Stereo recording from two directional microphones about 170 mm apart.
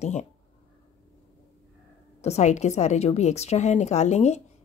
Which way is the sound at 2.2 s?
40° left (ahead or behind).